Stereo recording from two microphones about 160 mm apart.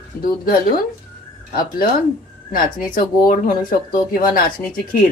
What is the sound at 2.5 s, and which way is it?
Speech, 60° left (ahead or behind).